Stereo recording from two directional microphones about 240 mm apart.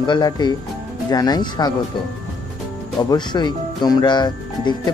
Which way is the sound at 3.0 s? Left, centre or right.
Centre.